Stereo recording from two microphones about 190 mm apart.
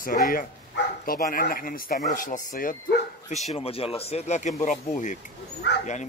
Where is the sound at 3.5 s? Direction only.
30° left (ahead or behind).